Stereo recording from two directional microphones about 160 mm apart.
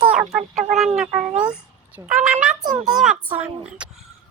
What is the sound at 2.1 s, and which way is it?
A child's voice, 10° right (ahead or behind).